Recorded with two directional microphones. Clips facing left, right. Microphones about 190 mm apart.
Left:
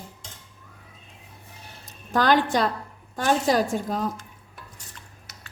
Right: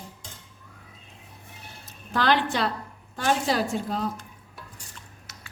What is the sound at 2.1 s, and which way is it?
A woman's voice, 45° left (ahead or behind).